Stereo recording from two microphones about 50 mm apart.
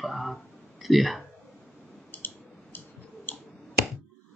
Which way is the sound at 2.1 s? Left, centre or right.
Left.